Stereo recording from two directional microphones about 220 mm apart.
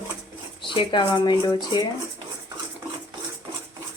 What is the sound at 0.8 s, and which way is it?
Speech, 20° left (ahead or behind).